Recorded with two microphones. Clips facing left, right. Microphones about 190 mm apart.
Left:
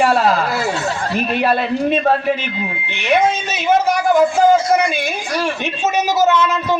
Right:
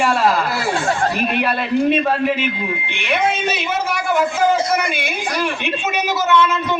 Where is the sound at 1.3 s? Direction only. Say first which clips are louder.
Left 3 dB; 40° left (ahead or behind).